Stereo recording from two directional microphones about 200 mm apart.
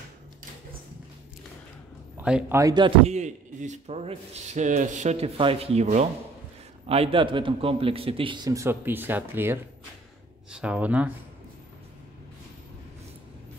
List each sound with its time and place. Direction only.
2.1 s speech: 5° right (ahead or behind)
2.6 s a man's voice: 20° right (ahead or behind)
3.1 s a man's voice: 35° right (ahead or behind); by 11.1 s 5° right (ahead or behind)